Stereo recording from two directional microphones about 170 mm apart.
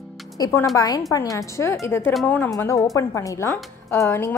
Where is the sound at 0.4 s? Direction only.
15° left (ahead or behind).